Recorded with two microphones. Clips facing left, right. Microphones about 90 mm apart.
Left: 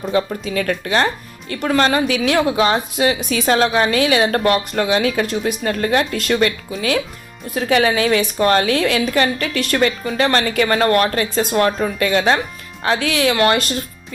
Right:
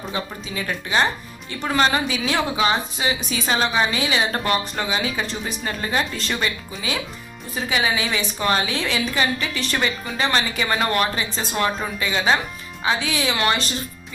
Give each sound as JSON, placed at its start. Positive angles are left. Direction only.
{"t": 0.1, "sound": "speech", "side_deg": 60}
{"t": 11.9, "sound": "speech", "side_deg": 60}